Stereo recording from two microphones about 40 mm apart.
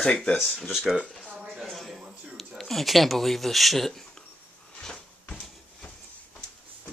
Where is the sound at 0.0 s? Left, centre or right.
Left.